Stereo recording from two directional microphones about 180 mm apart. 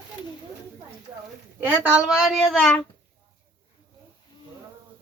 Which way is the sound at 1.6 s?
5° right (ahead or behind).